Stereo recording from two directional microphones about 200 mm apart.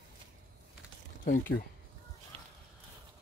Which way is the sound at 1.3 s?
45° left (ahead or behind).